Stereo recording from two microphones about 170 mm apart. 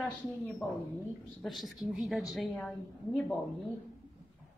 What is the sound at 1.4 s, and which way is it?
A woman's voice, centre (ahead or behind).